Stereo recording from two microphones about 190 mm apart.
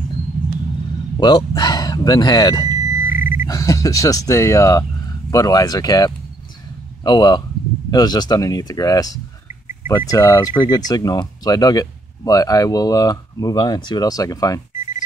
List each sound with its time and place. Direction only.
1.2 s speech: 25° left (ahead or behind)
3.1 s a sound: 45° left (ahead or behind)
3.4 s speech: 15° left (ahead or behind)